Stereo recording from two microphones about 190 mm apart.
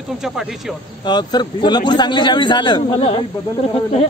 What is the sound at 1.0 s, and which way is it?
A man's voice, 20° left (ahead or behind).